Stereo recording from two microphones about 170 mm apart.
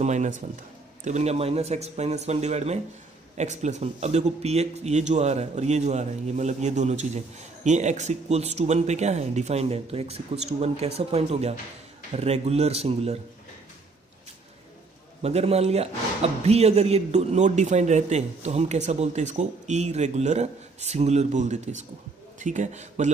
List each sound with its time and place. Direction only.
0.0 s speech: 45° right (ahead or behind)
15.2 s a man's voice: 40° right (ahead or behind)